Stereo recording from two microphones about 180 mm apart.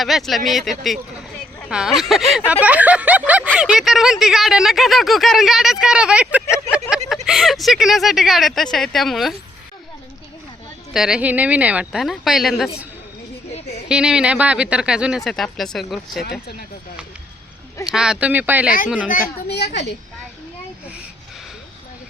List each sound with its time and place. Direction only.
0.0 s speech: centre (ahead or behind)
2.6 s snicker: 10° right (ahead or behind)
3.6 s speech: 5° right (ahead or behind)
10.9 s speech: 5° right (ahead or behind)
13.5 s a sound: 40° left (ahead or behind)
13.8 s speech: 5° right (ahead or behind)
17.8 s snicker: 5° right (ahead or behind)
19.0 s speech: 55° left (ahead or behind)